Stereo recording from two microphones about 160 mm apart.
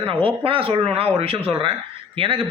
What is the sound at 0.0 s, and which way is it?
A man's voice, 35° right (ahead or behind).